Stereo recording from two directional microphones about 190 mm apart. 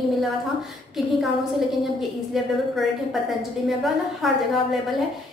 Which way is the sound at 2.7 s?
Centre (ahead or behind).